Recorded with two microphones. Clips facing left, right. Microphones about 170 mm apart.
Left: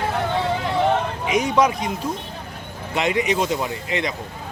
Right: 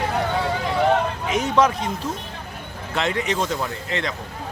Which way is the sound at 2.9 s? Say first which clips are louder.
Left 3 dB; 15° left (ahead or behind).